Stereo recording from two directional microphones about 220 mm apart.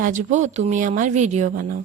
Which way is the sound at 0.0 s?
35° right (ahead or behind).